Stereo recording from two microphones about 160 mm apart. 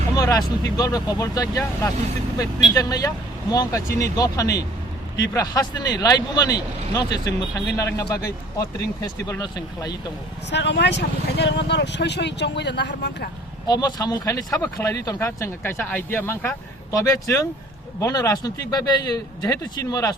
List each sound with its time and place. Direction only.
0.2 s speech: 25° left (ahead or behind)
10.5 s speech: 90° left
13.7 s speech: 25° left (ahead or behind)